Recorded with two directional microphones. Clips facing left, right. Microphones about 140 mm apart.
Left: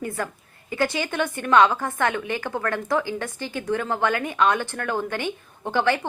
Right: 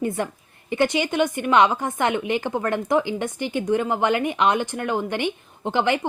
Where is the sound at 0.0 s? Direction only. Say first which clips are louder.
Right 4 dB; 25° right (ahead or behind).